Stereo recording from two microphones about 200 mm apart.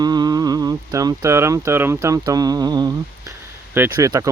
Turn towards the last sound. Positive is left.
turn(degrees=-15)  # may be behind; listen again after turning